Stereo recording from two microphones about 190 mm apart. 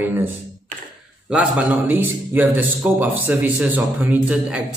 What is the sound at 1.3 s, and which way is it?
A man's voice, 5° right (ahead or behind).